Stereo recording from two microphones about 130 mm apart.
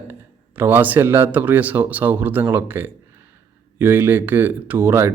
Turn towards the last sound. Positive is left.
turn(degrees=-20)  # may be behind; listen again after turning